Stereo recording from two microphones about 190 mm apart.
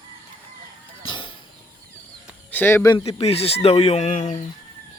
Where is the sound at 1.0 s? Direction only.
25° left (ahead or behind).